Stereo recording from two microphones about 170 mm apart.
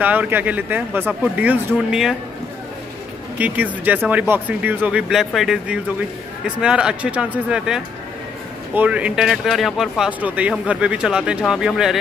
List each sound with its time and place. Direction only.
0.0 s speech: 10° right (ahead or behind)
3.3 s speech: 10° right (ahead or behind)